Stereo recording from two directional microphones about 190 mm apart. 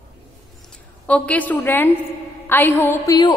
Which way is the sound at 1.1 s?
5° left (ahead or behind).